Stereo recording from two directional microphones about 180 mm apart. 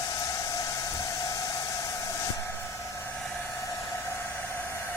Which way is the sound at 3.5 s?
15° left (ahead or behind).